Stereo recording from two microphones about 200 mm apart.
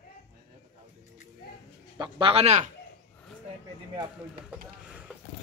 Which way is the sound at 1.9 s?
25° right (ahead or behind).